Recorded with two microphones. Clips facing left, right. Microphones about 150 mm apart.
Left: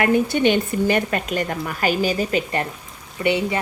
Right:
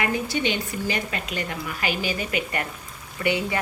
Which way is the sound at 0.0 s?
55° left (ahead or behind).